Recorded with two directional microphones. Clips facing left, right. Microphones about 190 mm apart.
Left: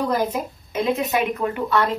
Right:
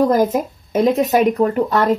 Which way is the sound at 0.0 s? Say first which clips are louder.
Right 7 dB; 45° right (ahead or behind).